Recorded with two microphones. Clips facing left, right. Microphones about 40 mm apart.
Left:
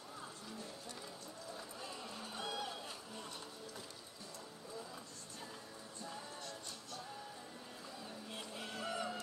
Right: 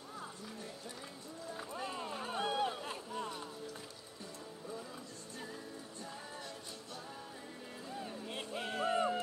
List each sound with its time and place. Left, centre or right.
1.6 s run: right
7.9 s music: right